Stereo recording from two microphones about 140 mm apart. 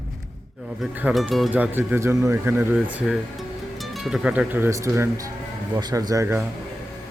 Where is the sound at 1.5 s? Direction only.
15° right (ahead or behind).